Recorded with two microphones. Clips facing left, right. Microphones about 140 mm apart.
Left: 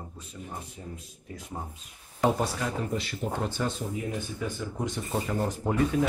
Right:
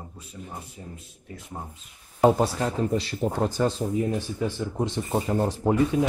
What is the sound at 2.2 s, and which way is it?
Speech, 35° right (ahead or behind).